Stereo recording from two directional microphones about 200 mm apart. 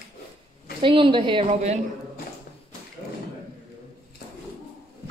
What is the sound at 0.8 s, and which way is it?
Speech, 25° right (ahead or behind).